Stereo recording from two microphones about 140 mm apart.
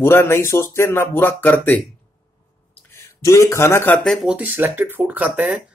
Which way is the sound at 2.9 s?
20° left (ahead or behind).